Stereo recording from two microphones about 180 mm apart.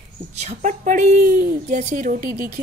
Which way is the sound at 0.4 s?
40° right (ahead or behind).